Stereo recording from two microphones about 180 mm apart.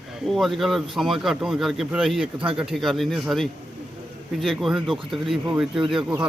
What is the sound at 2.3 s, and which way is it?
Speech, 30° right (ahead or behind).